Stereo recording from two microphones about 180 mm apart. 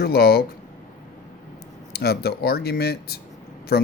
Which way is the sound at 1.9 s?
60° left (ahead or behind).